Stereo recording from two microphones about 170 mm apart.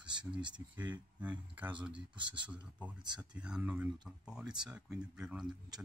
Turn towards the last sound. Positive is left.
turn(degrees=-5)  # may be behind; listen again after turning